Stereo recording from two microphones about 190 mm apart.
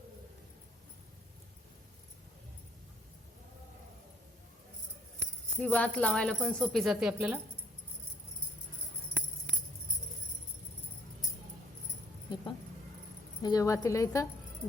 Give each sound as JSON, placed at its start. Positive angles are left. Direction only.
{"t": 5.5, "sound": "speech", "side_deg": 5}
{"t": 13.4, "sound": "speech", "side_deg": 20}